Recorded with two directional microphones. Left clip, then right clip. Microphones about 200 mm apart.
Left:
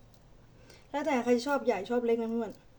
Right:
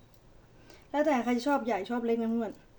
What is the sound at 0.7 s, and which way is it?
A woman's voice, 20° right (ahead or behind).